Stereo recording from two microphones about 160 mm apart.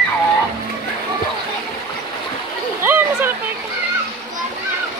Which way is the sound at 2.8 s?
10° right (ahead or behind).